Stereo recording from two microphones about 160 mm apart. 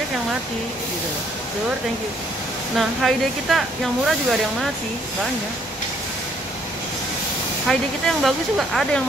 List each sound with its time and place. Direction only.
3.0 s speech: centre (ahead or behind)
7.6 s speech: centre (ahead or behind)